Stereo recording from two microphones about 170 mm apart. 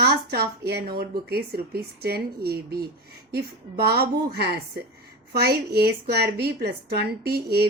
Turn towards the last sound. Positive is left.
turn(degrees=-70)  # may be behind; listen again after turning